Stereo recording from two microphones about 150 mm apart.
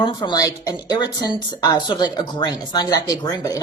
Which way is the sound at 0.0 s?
30° left (ahead or behind).